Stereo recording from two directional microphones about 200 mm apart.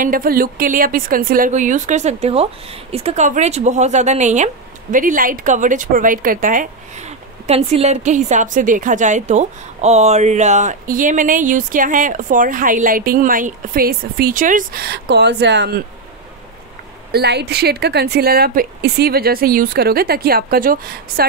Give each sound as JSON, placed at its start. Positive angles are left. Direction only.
{"t": 0.0, "sound": "a woman's voice", "side_deg": -45}
{"t": 17.1, "sound": "a woman's voice", "side_deg": -55}